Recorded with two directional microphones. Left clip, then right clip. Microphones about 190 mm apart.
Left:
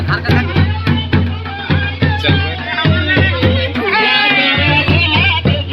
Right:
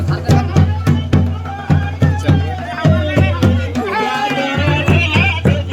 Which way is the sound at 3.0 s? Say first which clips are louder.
Left 4 dB; 45° right (ahead or behind).